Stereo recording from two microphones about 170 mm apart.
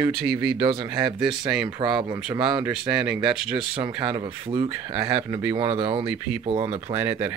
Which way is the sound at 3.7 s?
25° right (ahead or behind).